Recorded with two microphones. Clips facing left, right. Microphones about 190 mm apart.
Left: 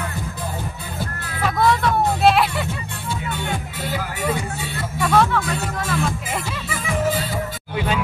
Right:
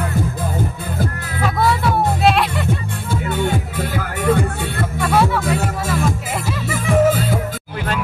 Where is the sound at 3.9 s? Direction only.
55° right (ahead or behind).